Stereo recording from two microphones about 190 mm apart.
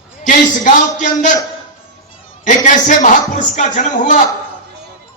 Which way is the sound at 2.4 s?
40° left (ahead or behind).